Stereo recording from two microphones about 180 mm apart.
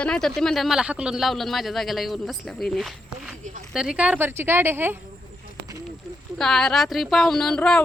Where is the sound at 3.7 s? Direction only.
5° right (ahead or behind).